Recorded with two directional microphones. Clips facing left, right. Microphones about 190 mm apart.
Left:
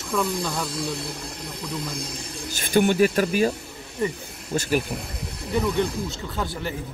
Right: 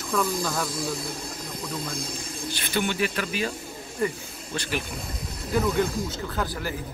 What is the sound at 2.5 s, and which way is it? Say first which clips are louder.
Speech: left 8 dB; 45° left (ahead or behind).